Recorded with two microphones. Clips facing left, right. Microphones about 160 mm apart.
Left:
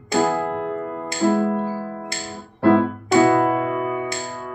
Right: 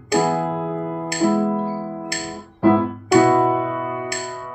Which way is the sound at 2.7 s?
15° right (ahead or behind).